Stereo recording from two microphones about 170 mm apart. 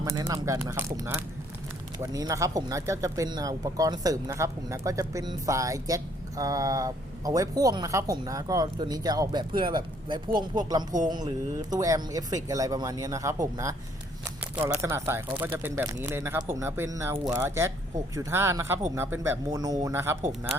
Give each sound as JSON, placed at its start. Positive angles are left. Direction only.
{"t": 0.0, "sound": "speech", "side_deg": -20}
{"t": 14.5, "sound": "speech", "side_deg": -10}